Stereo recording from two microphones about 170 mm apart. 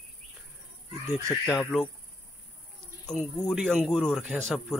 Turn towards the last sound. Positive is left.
turn(degrees=0)  # may be behind; listen again after turning